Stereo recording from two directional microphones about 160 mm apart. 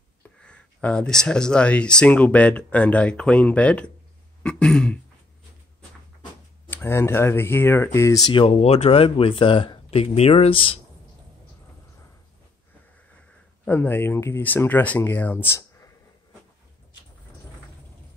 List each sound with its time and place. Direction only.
0.2 s speech: 5° left (ahead or behind)
6.7 s speech: 15° left (ahead or behind)
8.3 s speech: 30° left (ahead or behind)
13.7 s speech: 10° left (ahead or behind)